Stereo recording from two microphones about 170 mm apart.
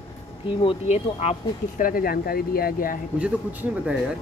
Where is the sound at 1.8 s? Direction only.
60° left (ahead or behind).